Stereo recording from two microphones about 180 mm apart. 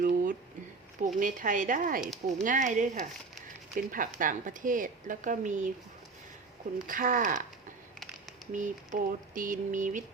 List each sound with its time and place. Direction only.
0.0 s a sound: 50° right (ahead or behind)
1.2 s speech: 45° right (ahead or behind)
6.8 s speech: 50° right (ahead or behind)
8.5 s speech: 45° right (ahead or behind)